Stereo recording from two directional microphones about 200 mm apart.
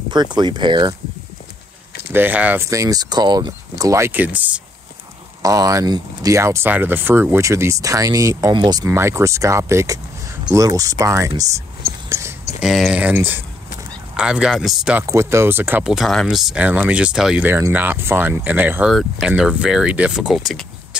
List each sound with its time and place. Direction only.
0.1 s speech: 20° right (ahead or behind)
2.1 s speech: 10° right (ahead or behind)
12.6 s speech: centre (ahead or behind)